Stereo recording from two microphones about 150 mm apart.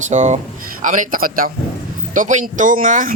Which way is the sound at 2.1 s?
60° right (ahead or behind).